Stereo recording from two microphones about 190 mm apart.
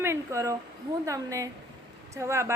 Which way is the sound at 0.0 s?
15° right (ahead or behind).